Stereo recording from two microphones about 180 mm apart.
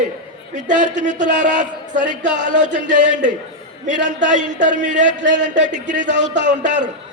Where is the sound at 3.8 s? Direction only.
45° right (ahead or behind).